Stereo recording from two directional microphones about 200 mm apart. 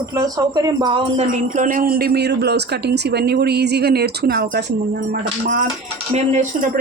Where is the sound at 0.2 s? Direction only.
20° right (ahead or behind); by 4.6 s 55° right (ahead or behind).